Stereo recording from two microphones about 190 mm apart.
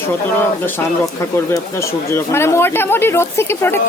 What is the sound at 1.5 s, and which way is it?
Speech, 15° left (ahead or behind).